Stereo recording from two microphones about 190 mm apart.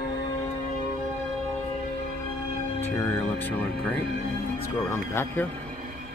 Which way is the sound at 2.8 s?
10° left (ahead or behind).